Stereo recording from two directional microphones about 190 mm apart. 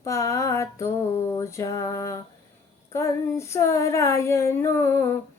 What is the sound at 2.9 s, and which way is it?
Mantra, 15° left (ahead or behind).